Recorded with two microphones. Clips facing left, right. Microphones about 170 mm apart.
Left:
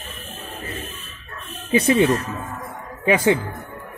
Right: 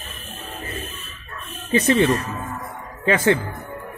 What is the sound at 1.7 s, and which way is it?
A man's voice, 10° left (ahead or behind).